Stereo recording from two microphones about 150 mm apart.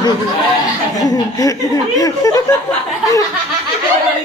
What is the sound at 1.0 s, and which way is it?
Speech, 25° left (ahead or behind).